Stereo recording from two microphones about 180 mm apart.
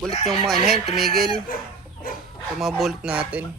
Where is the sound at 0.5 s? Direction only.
55° right (ahead or behind).